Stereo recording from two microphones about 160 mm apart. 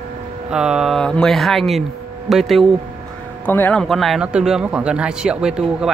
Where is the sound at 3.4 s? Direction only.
10° left (ahead or behind).